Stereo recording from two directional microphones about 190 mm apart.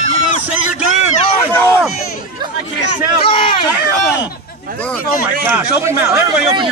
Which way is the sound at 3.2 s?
30° left (ahead or behind).